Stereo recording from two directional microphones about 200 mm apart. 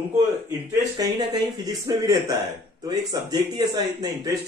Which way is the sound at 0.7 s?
20° right (ahead or behind).